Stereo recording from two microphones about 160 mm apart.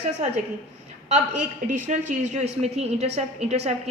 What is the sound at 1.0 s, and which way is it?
A woman's voice, 45° right (ahead or behind).